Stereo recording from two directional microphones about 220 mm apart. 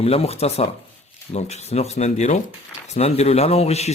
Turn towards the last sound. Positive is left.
turn(degrees=30)  # may be behind; listen again after turning